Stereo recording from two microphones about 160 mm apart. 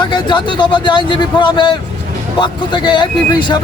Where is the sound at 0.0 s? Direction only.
30° left (ahead or behind).